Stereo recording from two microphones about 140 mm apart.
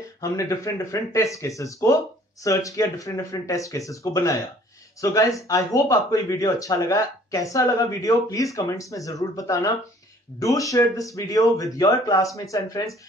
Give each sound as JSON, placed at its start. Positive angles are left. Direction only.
{"t": 0.2, "sound": "speech", "side_deg": 25}